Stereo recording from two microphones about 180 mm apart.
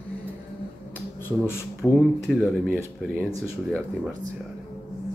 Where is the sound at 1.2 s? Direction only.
15° left (ahead or behind).